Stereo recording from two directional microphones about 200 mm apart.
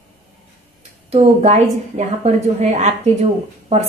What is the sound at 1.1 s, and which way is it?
A woman's voice, 30° right (ahead or behind).